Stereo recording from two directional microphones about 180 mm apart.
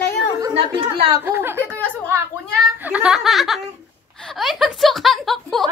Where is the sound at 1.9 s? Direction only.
10° right (ahead or behind).